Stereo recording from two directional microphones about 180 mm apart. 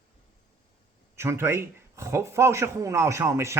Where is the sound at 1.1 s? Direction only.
15° right (ahead or behind).